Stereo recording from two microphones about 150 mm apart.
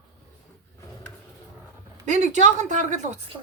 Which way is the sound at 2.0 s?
50° right (ahead or behind).